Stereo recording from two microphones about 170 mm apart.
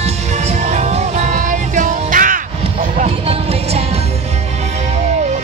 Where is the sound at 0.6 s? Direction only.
45° right (ahead or behind).